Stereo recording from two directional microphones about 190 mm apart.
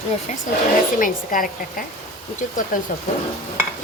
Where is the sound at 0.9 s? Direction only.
45° left (ahead or behind).